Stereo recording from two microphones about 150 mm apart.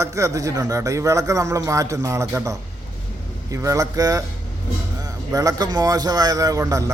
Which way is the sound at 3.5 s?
20° right (ahead or behind).